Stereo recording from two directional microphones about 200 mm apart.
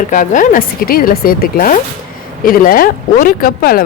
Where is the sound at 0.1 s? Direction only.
40° left (ahead or behind).